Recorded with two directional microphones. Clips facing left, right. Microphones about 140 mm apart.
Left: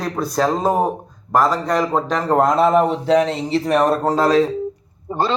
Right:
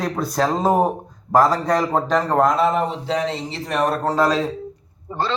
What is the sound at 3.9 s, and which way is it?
Speech, 20° left (ahead or behind).